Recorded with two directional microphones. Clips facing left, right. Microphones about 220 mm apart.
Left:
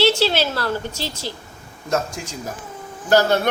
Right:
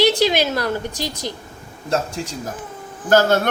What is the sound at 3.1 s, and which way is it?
Insect, 50° right (ahead or behind).